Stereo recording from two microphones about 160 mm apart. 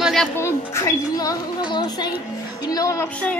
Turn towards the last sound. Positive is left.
turn(degrees=15)  # may be behind; listen again after turning